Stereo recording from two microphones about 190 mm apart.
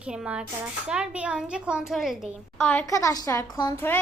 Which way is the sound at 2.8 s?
15° left (ahead or behind).